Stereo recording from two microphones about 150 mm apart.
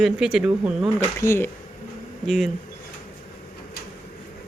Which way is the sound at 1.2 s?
15° left (ahead or behind).